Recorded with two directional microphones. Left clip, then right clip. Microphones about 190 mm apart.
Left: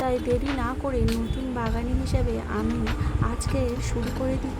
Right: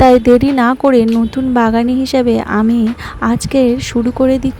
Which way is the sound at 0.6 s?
50° right (ahead or behind).